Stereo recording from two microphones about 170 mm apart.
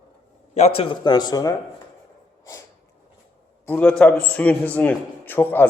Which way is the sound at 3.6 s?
10° left (ahead or behind).